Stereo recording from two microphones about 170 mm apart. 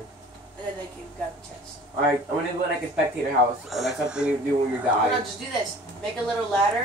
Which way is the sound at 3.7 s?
Centre (ahead or behind).